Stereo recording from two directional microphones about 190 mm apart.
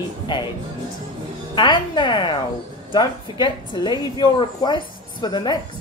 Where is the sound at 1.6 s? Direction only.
25° left (ahead or behind).